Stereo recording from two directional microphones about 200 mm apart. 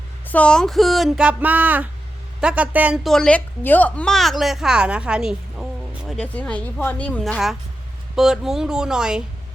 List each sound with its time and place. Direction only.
0.3 s a woman's voice: 5° left (ahead or behind)